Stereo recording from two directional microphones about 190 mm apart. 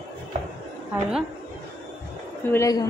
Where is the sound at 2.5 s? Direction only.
15° left (ahead or behind).